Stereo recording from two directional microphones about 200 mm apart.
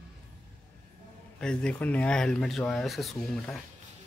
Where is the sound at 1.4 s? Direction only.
5° left (ahead or behind).